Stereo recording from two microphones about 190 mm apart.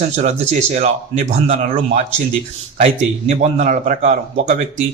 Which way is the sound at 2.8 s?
35° right (ahead or behind).